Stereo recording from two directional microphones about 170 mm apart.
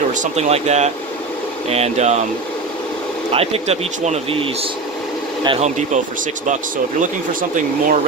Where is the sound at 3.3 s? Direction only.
35° right (ahead or behind).